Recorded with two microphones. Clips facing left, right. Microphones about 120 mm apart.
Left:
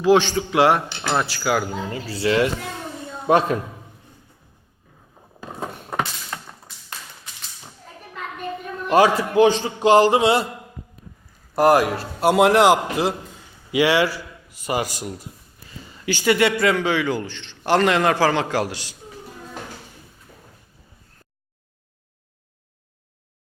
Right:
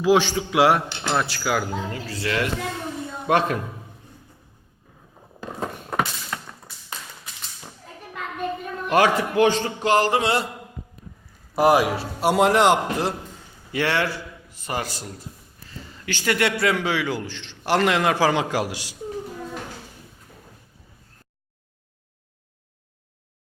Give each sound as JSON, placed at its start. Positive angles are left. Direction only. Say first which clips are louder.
{"t": 0.0, "sound": "a man's voice", "louder": "left 2 dB", "side_deg": -5}
{"t": 2.2, "sound": "mantra", "louder": "left 5 dB", "side_deg": 25}
{"t": 5.4, "sound": "a sound", "louder": "right 1 dB", "side_deg": 10}
{"t": 8.9, "sound": "mantra", "louder": "left 3 dB", "side_deg": 25}
{"t": 11.5, "sound": "a man's voice", "louder": "left 2 dB", "side_deg": 0}